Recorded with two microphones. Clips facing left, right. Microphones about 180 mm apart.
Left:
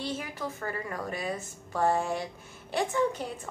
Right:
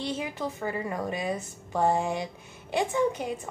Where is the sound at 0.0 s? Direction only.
20° right (ahead or behind).